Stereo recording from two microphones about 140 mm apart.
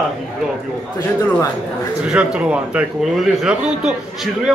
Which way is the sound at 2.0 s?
5° right (ahead or behind).